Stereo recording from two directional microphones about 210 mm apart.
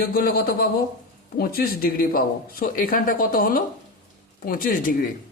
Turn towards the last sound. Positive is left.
turn(degrees=40)  # may be behind; listen again after turning